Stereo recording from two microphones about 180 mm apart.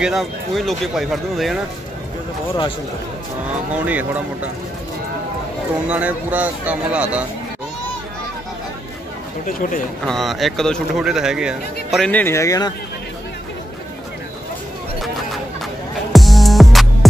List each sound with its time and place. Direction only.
0.0 s speech: centre (ahead or behind)
3.7 s speech: 10° right (ahead or behind)
5.9 s speech: 10° right (ahead or behind)
9.5 s a man's voice: 45° left (ahead or behind)
10.0 s speech: centre (ahead or behind)
12.1 s speech: 10° left (ahead or behind)
16.1 s music: centre (ahead or behind)